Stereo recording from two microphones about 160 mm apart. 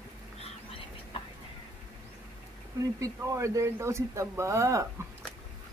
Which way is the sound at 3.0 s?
20° right (ahead or behind).